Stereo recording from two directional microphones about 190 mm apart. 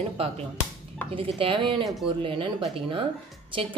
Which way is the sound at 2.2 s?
25° right (ahead or behind).